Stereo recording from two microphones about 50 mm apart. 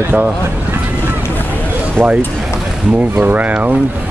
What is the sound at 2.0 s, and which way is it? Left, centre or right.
Speech, right.